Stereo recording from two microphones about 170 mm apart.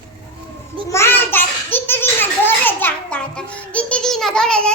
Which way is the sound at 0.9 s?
15° left (ahead or behind).